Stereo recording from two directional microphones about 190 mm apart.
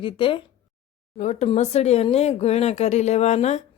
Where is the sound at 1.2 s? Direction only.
35° left (ahead or behind).